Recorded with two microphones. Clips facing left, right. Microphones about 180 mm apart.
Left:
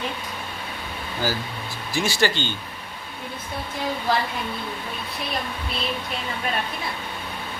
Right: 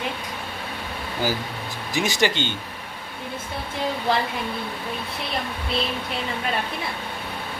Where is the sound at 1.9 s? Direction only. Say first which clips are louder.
Even; 20° right (ahead or behind).